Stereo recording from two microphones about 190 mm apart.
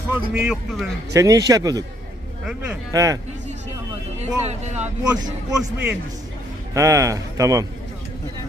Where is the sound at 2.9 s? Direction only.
15° right (ahead or behind).